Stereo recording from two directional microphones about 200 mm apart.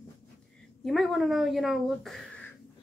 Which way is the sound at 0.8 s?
Centre (ahead or behind).